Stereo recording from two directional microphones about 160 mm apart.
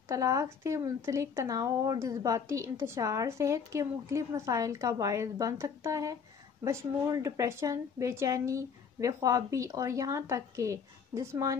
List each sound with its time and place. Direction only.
0.1 s speech: 20° right (ahead or behind)